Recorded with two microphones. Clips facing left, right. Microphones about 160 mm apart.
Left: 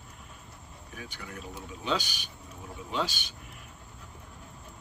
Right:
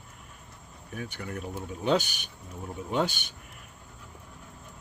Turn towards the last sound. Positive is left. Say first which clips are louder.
# right 4 dB
turn(degrees=-55)  # may be behind; listen again after turning